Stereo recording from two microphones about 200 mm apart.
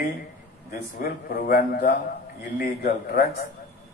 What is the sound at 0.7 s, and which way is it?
A man's voice, 50° left (ahead or behind).